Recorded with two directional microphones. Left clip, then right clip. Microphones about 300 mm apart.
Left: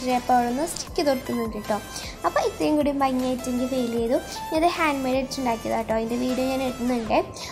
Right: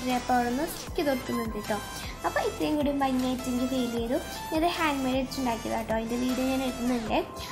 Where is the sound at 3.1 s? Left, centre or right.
Centre.